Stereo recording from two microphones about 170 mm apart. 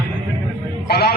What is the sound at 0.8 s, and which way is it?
Speech, 70° left (ahead or behind).